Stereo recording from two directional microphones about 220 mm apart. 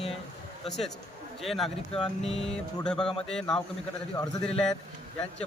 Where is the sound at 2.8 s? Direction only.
5° left (ahead or behind).